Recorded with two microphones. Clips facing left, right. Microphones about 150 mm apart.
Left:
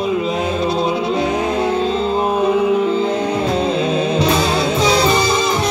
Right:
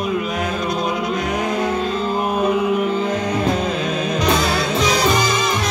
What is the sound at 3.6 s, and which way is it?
Music, 30° left (ahead or behind).